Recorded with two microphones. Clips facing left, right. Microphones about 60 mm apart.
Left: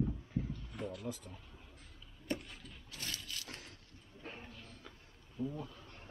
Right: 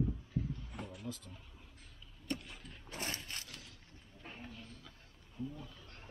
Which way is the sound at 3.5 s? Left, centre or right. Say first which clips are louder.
Left 3 dB; left.